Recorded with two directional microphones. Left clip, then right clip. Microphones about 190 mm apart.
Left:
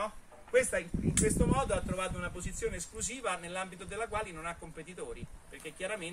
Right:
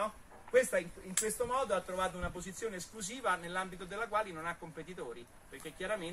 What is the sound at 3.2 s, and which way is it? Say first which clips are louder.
A man's voice: right 2 dB; 40° left (ahead or behind).